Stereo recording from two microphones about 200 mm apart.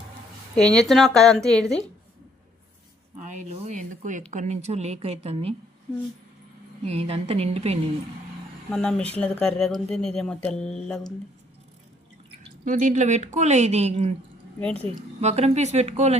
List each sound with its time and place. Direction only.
0.5 s speech: 5° left (ahead or behind)
3.2 s speech: 40° right (ahead or behind)
6.8 s speech: 30° right (ahead or behind)
8.7 s speech: 5° left (ahead or behind)
12.4 s a woman's voice: 40° right (ahead or behind)